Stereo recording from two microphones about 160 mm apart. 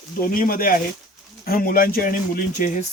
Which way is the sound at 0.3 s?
65° left (ahead or behind).